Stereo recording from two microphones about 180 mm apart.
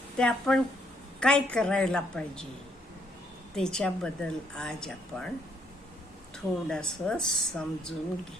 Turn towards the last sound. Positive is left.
turn(degrees=5)  # may be behind; listen again after turning